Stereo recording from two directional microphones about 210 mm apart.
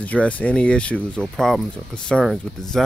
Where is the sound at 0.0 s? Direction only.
5° left (ahead or behind).